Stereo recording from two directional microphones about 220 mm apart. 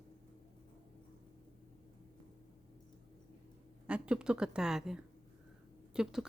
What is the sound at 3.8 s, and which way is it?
Speech, 5° right (ahead or behind).